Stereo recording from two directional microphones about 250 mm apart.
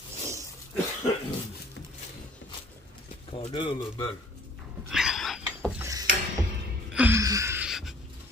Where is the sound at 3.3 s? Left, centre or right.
Left.